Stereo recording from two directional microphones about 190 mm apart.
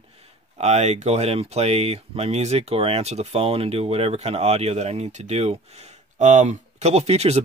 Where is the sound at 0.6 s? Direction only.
35° right (ahead or behind).